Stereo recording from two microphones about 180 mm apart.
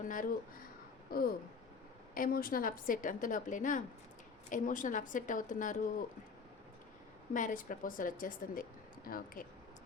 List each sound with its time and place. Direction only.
0.0 s speech: 50° left (ahead or behind)
1.1 s a sound: 55° left (ahead or behind)
2.1 s a woman's voice: 50° left (ahead or behind)
7.3 s a woman's voice: 45° left (ahead or behind)